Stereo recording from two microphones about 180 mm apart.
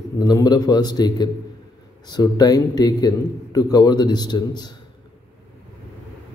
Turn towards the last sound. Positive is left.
turn(degrees=25)  # may be behind; listen again after turning